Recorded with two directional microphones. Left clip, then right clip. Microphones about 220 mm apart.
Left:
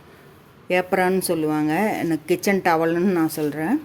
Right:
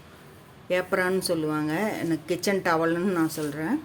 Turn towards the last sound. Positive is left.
turn(degrees=25)  # may be behind; listen again after turning